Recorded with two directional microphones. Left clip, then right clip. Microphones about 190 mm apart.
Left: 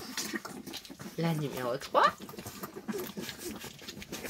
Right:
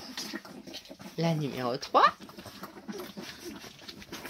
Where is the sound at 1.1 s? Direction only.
25° right (ahead or behind).